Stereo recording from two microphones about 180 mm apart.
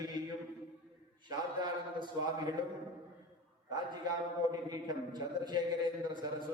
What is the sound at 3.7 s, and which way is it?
A man's voice, 25° right (ahead or behind).